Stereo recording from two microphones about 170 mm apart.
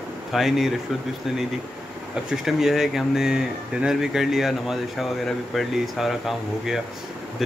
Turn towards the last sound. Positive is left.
turn(degrees=0)  # may be behind; listen again after turning